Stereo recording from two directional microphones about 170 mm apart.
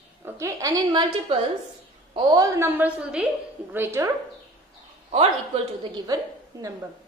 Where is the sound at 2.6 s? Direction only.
10° right (ahead or behind).